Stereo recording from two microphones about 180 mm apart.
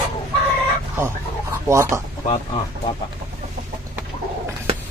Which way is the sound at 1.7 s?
15° right (ahead or behind).